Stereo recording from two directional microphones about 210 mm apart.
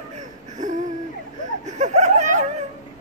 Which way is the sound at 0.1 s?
35° right (ahead or behind).